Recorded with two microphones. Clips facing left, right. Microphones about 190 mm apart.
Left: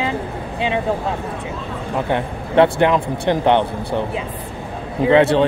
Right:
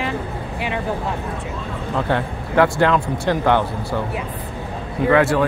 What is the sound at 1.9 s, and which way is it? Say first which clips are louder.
Speech: left 1 dB; 20° left (ahead or behind).